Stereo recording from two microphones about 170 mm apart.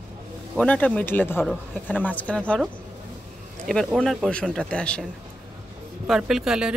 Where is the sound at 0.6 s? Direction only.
10° left (ahead or behind).